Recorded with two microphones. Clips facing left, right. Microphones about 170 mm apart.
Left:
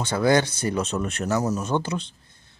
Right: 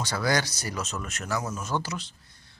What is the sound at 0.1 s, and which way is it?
Speech, 25° left (ahead or behind).